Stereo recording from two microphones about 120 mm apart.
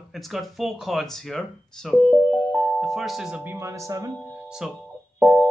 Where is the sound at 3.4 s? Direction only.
15° right (ahead or behind).